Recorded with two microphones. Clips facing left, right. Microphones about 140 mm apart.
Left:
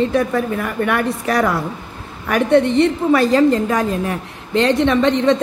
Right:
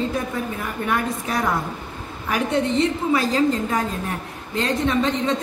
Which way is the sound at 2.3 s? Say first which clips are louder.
Left 7 dB; 60° left (ahead or behind).